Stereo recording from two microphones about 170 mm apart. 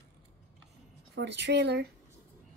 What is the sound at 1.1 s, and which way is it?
Speech, 85° right.